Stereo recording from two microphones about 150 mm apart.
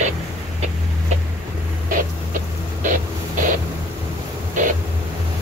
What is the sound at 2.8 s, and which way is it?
Vehicle, 65° right (ahead or behind).